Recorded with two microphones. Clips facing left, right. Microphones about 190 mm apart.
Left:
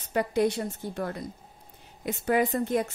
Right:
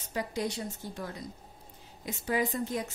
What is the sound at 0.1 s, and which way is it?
Speech, 60° left (ahead or behind).